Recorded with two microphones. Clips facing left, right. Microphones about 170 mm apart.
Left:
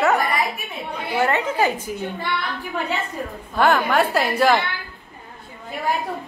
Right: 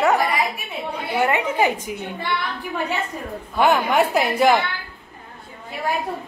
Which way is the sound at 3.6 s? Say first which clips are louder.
Even; 15° right (ahead or behind).